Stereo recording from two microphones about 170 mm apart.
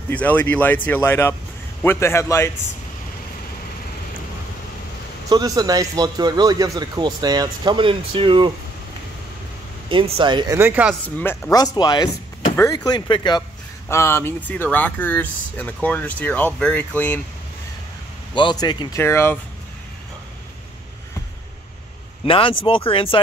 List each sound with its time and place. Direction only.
0.1 s speech: 10° left (ahead or behind)
5.3 s speech: 20° right (ahead or behind)
9.8 s speech: 30° right (ahead or behind)
10.6 s speech: 10° right (ahead or behind)
11.1 s speech: 10° left (ahead or behind)
11.5 s speech: 25° left (ahead or behind)
13.8 s speech: 15° left (ahead or behind)
18.3 s speech: 30° left (ahead or behind)
22.2 s speech: 30° left (ahead or behind)